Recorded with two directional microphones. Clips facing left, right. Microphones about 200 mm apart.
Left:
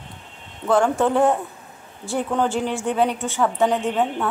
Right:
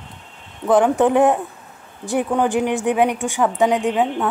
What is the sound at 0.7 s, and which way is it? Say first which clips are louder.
A woman's voice: right 3 dB; 15° right (ahead or behind).